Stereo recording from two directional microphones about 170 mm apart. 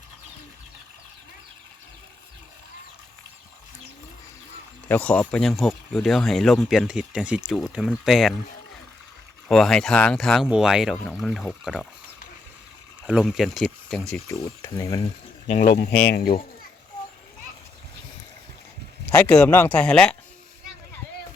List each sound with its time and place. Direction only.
4.9 s speech: 10° left (ahead or behind)
9.5 s speech: 5° left (ahead or behind)
13.1 s speech: 5° right (ahead or behind)
14.3 s speech: 20° left (ahead or behind)
15.9 s speech: 80° left
19.1 s speech: 5° left (ahead or behind)